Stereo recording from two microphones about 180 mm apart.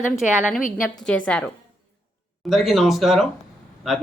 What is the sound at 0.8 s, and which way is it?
Speech, 5° left (ahead or behind).